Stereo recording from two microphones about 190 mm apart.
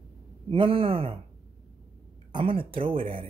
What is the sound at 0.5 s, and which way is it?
Speech, 30° right (ahead or behind).